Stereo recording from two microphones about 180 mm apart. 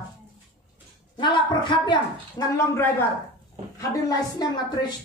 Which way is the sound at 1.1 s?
25° left (ahead or behind).